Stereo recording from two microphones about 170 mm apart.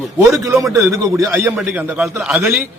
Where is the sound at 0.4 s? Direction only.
20° right (ahead or behind).